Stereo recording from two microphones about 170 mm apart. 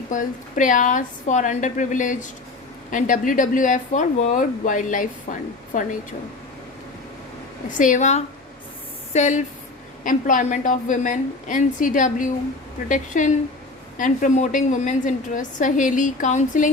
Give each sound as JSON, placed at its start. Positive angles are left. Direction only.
{"t": 0.1, "sound": "speech", "side_deg": 50}
{"t": 7.7, "sound": "speech", "side_deg": 50}